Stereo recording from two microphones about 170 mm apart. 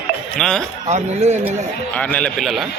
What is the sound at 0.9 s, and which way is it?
Speech, 40° right (ahead or behind).